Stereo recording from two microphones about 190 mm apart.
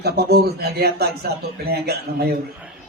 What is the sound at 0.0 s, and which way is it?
Speech, 55° right (ahead or behind).